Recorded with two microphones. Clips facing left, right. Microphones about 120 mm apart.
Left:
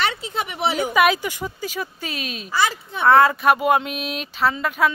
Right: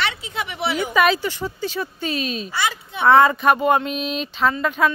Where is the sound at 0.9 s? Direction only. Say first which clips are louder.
Right 1 dB; 10° left (ahead or behind).